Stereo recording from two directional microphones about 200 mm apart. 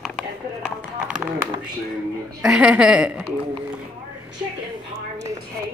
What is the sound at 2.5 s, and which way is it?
Speech, 5° right (ahead or behind).